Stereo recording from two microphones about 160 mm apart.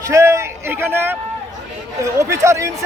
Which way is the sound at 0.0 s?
20° right (ahead or behind).